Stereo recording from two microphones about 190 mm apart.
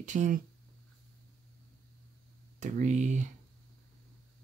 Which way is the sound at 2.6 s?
40° right (ahead or behind).